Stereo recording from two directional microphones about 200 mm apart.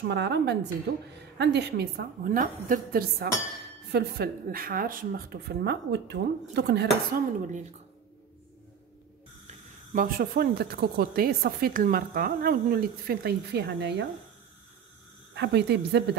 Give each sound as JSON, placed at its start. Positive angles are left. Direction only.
{"t": 0.1, "sound": "speech", "side_deg": -60}
{"t": 9.9, "sound": "speech", "side_deg": -45}
{"t": 15.3, "sound": "speech", "side_deg": -60}